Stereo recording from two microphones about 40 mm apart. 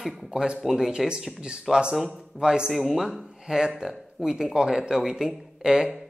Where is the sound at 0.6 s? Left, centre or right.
Centre.